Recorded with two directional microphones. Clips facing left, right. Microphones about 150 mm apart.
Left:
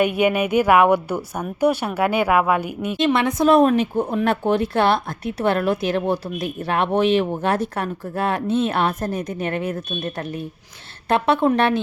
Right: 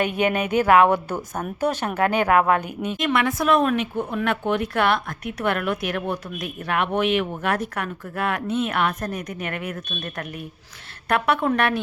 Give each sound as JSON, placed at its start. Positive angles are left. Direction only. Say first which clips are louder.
{"t": 0.0, "sound": "a woman's voice", "louder": "left 4 dB", "side_deg": 10}
{"t": 3.0, "sound": "speech", "louder": "left 5 dB", "side_deg": 25}
{"t": 3.5, "sound": "a woman's voice", "louder": "left 5 dB", "side_deg": 35}